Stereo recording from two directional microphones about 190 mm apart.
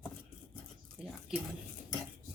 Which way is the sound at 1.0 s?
Centre (ahead or behind).